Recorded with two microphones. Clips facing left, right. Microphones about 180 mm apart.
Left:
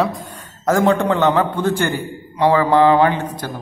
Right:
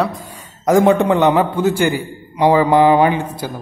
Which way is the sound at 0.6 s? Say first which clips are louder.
Right 3 dB; 15° right (ahead or behind).